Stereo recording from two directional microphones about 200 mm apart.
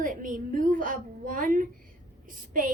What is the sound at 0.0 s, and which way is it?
A woman's voice, 40° right (ahead or behind).